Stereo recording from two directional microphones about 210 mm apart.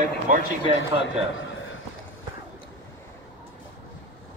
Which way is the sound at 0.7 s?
60° left (ahead or behind).